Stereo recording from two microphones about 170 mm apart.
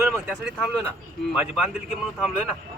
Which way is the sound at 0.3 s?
5° right (ahead or behind).